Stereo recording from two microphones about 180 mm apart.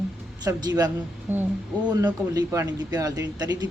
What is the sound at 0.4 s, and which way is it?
Speech, 20° right (ahead or behind).